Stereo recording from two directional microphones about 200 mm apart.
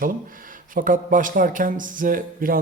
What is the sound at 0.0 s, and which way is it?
A man's voice, 45° right (ahead or behind).